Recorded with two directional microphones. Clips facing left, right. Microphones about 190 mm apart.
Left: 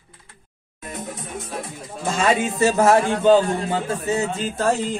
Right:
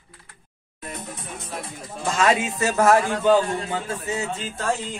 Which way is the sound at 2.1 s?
30° left (ahead or behind).